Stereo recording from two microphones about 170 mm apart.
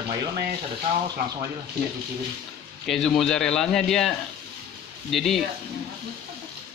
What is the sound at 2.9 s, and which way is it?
A man's voice, 5° left (ahead or behind).